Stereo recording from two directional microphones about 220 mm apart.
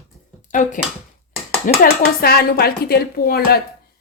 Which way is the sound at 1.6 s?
45° left (ahead or behind).